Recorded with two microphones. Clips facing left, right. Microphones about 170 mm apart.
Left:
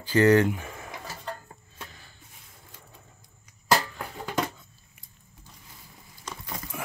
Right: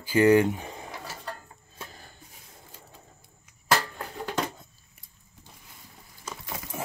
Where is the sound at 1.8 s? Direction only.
40° right (ahead or behind).